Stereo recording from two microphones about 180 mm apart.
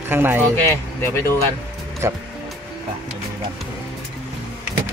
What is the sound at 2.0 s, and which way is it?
Speech, 15° right (ahead or behind).